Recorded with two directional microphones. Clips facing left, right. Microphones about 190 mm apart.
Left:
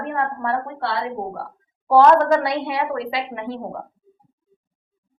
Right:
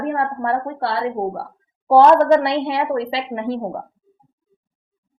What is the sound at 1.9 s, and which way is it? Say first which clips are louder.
A woman's voice: right 2 dB; 30° right (ahead or behind).